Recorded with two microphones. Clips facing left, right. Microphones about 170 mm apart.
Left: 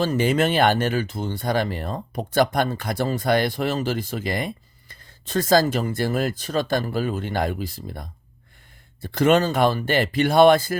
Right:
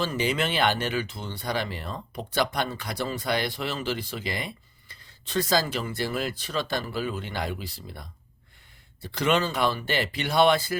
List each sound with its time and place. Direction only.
0.0 s speech: 45° left (ahead or behind)